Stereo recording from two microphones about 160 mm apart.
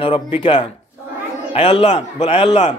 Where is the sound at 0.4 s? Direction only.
35° left (ahead or behind).